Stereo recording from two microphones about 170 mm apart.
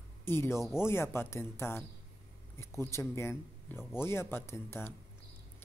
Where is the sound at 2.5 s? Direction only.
15° left (ahead or behind).